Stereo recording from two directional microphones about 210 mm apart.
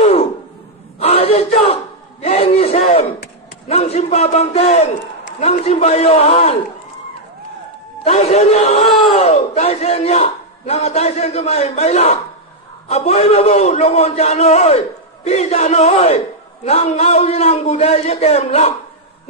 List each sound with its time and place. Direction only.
0.0 s a sound: 30° left (ahead or behind)
3.6 s a man's voice: 30° left (ahead or behind)
8.0 s a man's voice: 30° left (ahead or behind)